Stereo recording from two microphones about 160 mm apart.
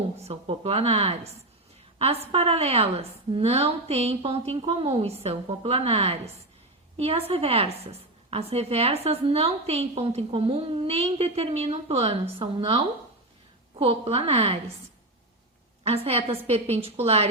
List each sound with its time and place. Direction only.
0.2 s a woman's voice: 40° right (ahead or behind)
15.8 s a woman's voice: 40° right (ahead or behind)